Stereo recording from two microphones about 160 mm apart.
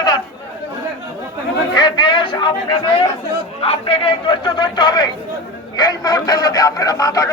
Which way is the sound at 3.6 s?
35° left (ahead or behind).